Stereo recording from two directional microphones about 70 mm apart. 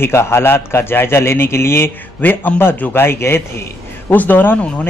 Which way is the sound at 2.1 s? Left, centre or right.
Left.